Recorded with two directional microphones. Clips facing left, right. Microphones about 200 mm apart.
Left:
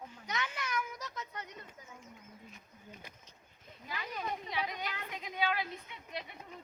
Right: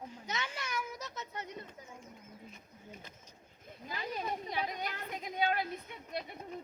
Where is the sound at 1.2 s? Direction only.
25° right (ahead or behind).